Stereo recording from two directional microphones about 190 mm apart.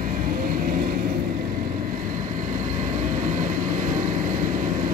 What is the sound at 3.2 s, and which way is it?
Vehicle, 45° right (ahead or behind).